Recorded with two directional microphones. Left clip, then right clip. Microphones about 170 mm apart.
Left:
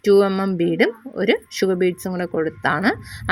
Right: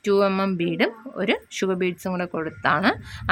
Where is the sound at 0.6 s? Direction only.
15° left (ahead or behind).